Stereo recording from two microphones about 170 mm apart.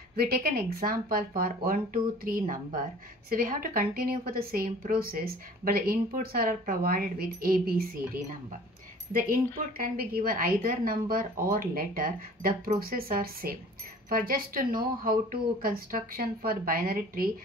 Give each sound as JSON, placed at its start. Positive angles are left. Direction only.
{"t": 0.1, "sound": "speech", "side_deg": -65}